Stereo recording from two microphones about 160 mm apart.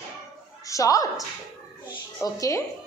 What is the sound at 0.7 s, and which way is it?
Speech, 20° left (ahead or behind).